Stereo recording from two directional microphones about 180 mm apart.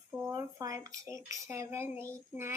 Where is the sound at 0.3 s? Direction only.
20° right (ahead or behind).